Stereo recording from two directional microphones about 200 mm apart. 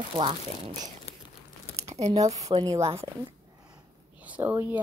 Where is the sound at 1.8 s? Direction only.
35° right (ahead or behind).